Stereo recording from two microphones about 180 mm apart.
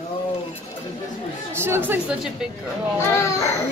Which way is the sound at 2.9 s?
15° left (ahead or behind).